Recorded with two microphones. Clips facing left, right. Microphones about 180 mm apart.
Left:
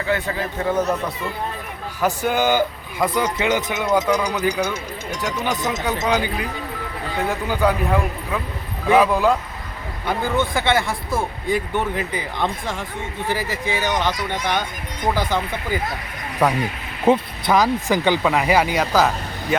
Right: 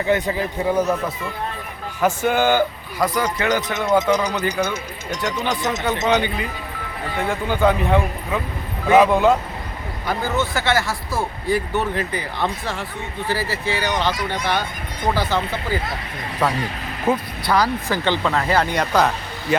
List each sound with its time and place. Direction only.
0.0 s speech: 20° right (ahead or behind)
2.2 s speech: 15° left (ahead or behind)
3.8 s speech: 5° left (ahead or behind)
10.1 s speech: 15° left (ahead or behind)
17.1 s speech: 20° left (ahead or behind); by 19.5 s centre (ahead or behind)